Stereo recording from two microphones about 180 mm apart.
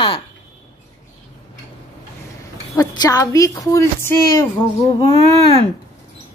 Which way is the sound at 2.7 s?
20° left (ahead or behind).